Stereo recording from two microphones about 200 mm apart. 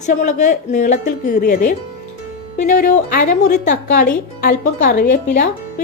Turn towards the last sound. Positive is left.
turn(degrees=40)  # may be behind; listen again after turning